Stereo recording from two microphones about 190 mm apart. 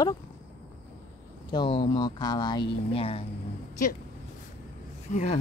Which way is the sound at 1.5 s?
25° left (ahead or behind).